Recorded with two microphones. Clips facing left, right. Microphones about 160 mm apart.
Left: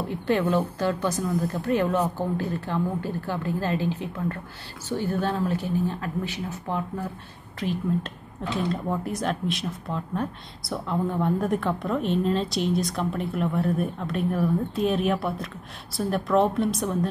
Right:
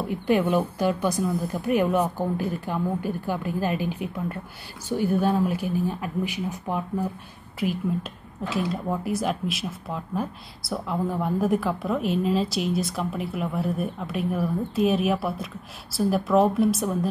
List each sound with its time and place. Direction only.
0.0 s speech: 10° right (ahead or behind)